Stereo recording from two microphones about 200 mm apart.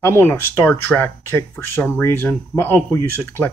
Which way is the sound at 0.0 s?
10° left (ahead or behind).